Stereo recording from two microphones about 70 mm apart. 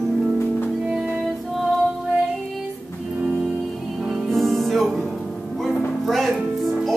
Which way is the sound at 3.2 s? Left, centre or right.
Centre.